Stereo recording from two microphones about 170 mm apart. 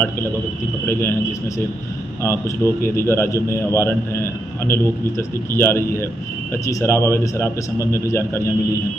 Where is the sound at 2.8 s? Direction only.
15° left (ahead or behind).